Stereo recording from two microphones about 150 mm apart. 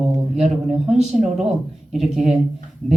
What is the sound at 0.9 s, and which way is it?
Speech, 45° right (ahead or behind).